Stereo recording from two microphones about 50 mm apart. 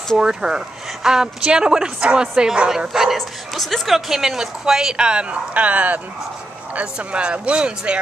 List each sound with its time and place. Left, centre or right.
0.2 s a woman's voice: centre
3.2 s a woman's voice: centre